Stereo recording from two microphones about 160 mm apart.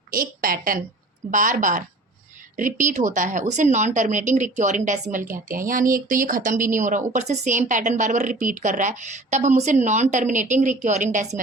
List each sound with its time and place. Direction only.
0.1 s a woman's voice: 60° right (ahead or behind)